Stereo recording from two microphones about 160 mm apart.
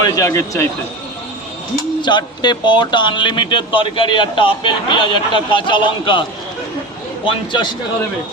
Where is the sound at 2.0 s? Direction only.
30° left (ahead or behind).